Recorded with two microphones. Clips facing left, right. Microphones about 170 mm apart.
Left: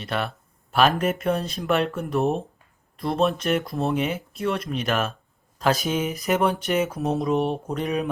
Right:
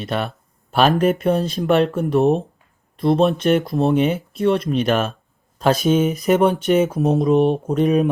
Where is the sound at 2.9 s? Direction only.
25° right (ahead or behind).